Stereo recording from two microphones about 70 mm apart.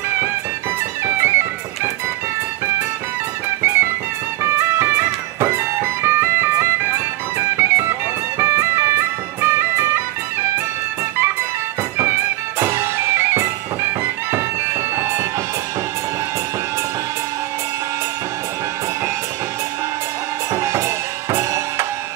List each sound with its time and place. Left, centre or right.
1.0 s music: right
3.6 s music: right
12.0 s music: right
14.3 s bagpipes: right
20.5 s drum: right